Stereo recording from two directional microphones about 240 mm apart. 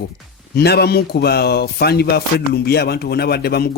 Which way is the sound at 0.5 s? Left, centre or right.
Left.